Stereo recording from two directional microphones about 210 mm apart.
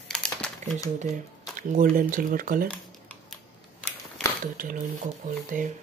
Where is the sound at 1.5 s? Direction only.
40° right (ahead or behind).